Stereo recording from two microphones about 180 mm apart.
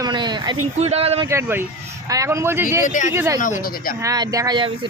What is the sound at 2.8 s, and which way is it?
Speech, 45° left (ahead or behind).